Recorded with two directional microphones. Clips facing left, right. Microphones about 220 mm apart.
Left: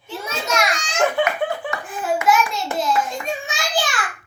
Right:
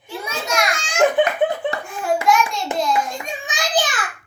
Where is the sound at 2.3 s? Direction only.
5° left (ahead or behind).